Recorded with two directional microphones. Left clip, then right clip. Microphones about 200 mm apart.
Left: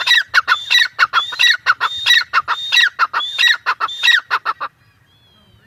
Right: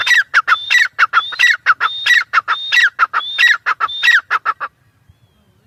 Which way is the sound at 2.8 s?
5° right (ahead or behind).